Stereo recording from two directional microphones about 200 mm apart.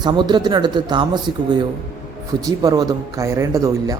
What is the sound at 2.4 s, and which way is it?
Speech, 20° right (ahead or behind).